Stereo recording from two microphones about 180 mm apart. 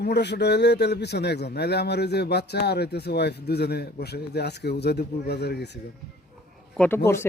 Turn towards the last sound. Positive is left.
turn(degrees=15)  # may be behind; listen again after turning